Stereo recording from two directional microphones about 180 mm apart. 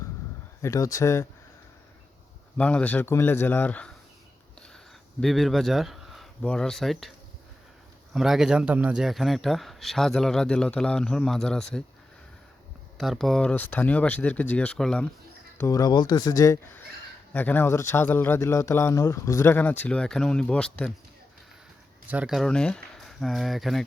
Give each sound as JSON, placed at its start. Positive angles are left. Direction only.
{"t": 0.6, "sound": "speech", "side_deg": 20}
{"t": 2.6, "sound": "speech", "side_deg": 5}
{"t": 5.2, "sound": "speech", "side_deg": 0}
{"t": 8.1, "sound": "a man's voice", "side_deg": 0}
{"t": 13.0, "sound": "speech", "side_deg": 0}
{"t": 15.5, "sound": "speech", "side_deg": 15}
{"t": 22.1, "sound": "speech", "side_deg": -5}